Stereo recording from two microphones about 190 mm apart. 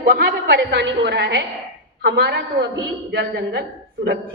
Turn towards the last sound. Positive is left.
turn(degrees=-60)  # may be behind; listen again after turning